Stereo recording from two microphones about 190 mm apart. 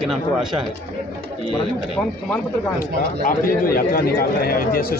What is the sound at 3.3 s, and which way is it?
A man's voice, 50° left (ahead or behind).